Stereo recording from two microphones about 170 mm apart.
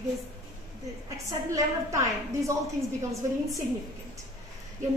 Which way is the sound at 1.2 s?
20° right (ahead or behind).